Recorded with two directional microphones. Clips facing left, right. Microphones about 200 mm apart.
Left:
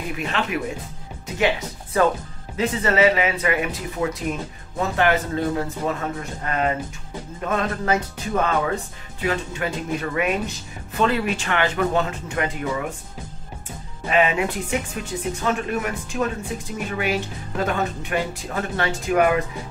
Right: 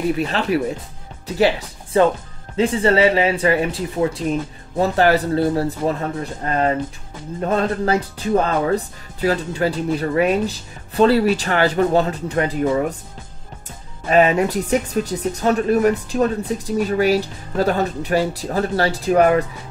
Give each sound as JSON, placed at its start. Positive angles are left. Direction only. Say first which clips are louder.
{"t": 0.2, "sound": "speech", "louder": "right 6 dB", "side_deg": -35}
{"t": 1.9, "sound": "speech", "louder": "right 4 dB", "side_deg": -25}
{"t": 14.0, "sound": "speech", "louder": "right 5 dB", "side_deg": -40}